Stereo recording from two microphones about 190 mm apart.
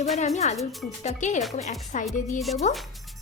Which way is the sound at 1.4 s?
Centre (ahead or behind).